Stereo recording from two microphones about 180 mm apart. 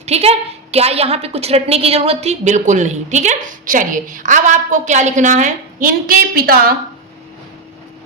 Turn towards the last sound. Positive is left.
turn(degrees=-55)  # may be behind; listen again after turning